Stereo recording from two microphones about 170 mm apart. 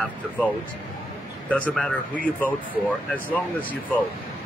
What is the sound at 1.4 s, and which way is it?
Speech, 10° left (ahead or behind).